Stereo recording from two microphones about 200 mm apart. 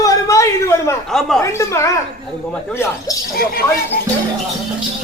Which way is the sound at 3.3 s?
50° left (ahead or behind).